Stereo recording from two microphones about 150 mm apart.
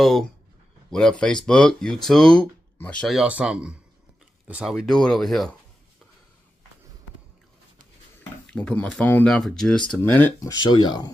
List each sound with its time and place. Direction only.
0.0 s speech: centre (ahead or behind)
4.7 s speech: centre (ahead or behind)
8.2 s speech: 5° left (ahead or behind)
10.4 s speech: 25° left (ahead or behind)